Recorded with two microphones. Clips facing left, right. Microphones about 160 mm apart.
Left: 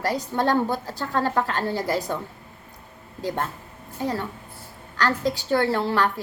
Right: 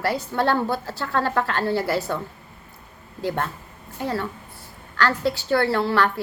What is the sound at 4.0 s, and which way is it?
Speech, 15° left (ahead or behind).